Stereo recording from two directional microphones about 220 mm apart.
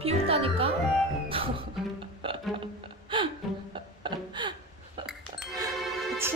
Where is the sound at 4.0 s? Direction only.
20° right (ahead or behind).